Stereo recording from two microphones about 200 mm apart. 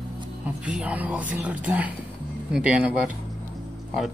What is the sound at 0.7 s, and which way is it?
Speech, 5° right (ahead or behind).